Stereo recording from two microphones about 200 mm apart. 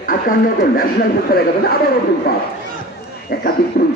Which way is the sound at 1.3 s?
50° left (ahead or behind).